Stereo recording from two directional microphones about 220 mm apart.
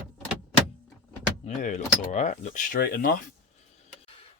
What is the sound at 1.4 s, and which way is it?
Speech, 35° left (ahead or behind).